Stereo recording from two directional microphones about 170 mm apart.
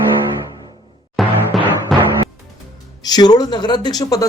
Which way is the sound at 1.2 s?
Centre (ahead or behind).